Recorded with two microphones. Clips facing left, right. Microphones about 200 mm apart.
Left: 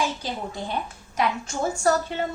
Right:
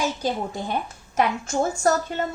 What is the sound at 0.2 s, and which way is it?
A woman's voice, 45° right (ahead or behind).